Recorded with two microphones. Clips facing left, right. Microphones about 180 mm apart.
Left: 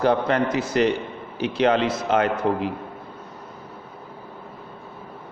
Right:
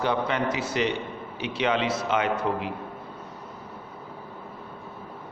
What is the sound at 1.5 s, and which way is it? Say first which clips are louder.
A man's voice: left 5 dB; 40° left (ahead or behind).